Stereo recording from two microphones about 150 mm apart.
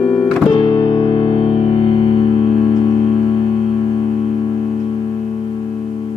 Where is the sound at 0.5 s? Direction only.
35° left (ahead or behind).